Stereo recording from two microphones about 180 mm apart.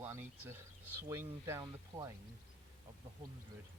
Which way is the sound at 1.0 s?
15° right (ahead or behind).